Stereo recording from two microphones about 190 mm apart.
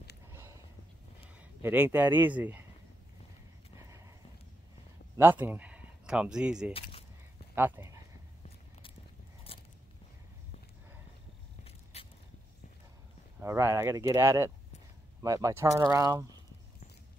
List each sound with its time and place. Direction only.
0.3 s a sound: 15° right (ahead or behind)
1.4 s a man's voice: 10° right (ahead or behind)
5.1 s speech: 10° right (ahead or behind)
6.7 s speech: 30° left (ahead or behind)
7.5 s speech: 10° right (ahead or behind)
9.5 s a sound: 30° left (ahead or behind)
11.6 s vehicle: 30° left (ahead or behind)
13.4 s speech: 15° right (ahead or behind)